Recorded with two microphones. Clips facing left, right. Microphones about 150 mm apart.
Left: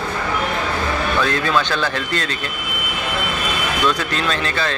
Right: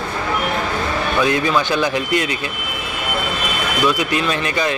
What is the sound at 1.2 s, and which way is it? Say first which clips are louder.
A man's voice: right 3 dB; 15° right (ahead or behind).